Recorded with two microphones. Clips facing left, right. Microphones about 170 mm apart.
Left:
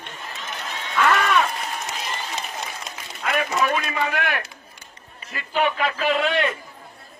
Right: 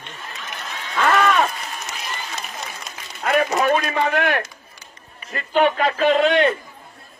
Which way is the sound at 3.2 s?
45° right (ahead or behind).